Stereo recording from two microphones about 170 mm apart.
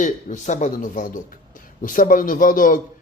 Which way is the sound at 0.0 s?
45° left (ahead or behind).